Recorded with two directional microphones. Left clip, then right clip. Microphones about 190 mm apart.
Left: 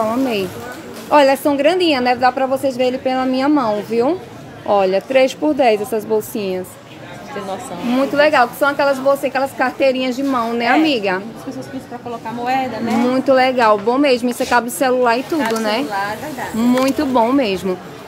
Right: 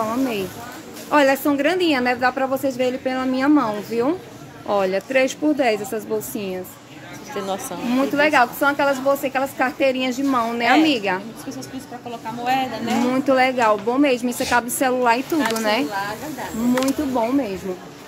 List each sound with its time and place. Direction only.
0.0 s a woman's voice: centre (ahead or behind)
7.9 s a woman's voice: centre (ahead or behind)
12.4 s a woman's voice: 10° right (ahead or behind)
16.8 s speech: 20° left (ahead or behind)